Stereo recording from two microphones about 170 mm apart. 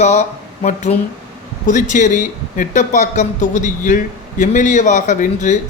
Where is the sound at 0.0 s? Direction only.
45° left (ahead or behind).